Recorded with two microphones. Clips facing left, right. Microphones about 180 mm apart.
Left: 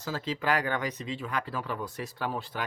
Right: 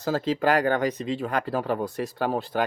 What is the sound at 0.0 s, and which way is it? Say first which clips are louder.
Speech: right 8 dB; 55° right (ahead or behind).